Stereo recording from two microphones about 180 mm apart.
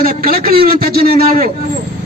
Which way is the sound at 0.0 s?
55° right (ahead or behind).